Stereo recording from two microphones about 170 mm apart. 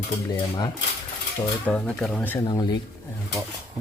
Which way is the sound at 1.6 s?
5° left (ahead or behind).